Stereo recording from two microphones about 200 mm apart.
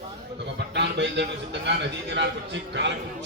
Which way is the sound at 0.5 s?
60° right (ahead or behind).